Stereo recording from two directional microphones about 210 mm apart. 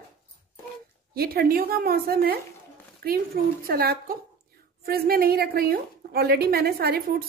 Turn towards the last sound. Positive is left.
turn(degrees=-45)  # may be behind; listen again after turning